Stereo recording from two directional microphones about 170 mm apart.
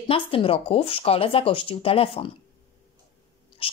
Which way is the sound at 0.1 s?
35° left (ahead or behind).